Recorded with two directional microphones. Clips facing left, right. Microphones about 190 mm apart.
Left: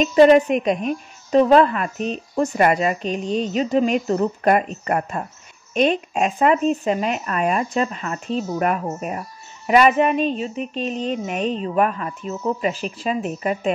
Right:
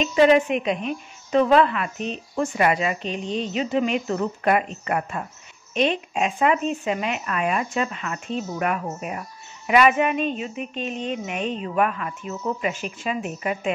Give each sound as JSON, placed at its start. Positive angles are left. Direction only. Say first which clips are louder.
{"t": 0.0, "sound": "a woman's voice", "louder": "left 4 dB", "side_deg": 40}